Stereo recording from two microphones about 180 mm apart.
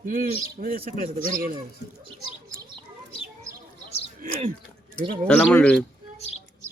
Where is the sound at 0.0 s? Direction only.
50° right (ahead or behind).